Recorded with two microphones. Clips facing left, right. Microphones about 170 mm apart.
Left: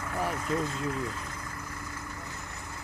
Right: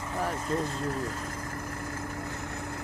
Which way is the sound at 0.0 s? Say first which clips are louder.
Even; 15° right (ahead or behind).